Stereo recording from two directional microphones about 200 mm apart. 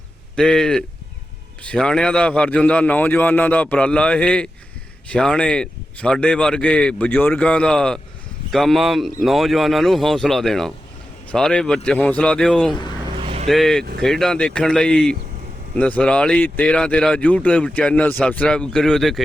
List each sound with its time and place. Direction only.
0.3 s a man's voice: 5° left (ahead or behind)
13.2 s vehicle: 30° right (ahead or behind)
13.5 s speech: centre (ahead or behind)